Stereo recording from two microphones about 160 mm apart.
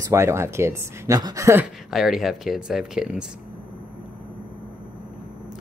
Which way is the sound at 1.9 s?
Centre (ahead or behind).